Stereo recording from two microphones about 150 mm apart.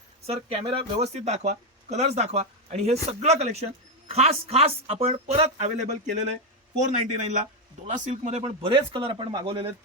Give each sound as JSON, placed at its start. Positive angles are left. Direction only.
{"t": 0.3, "sound": "a man's voice", "side_deg": -40}
{"t": 8.6, "sound": "a man's voice", "side_deg": -35}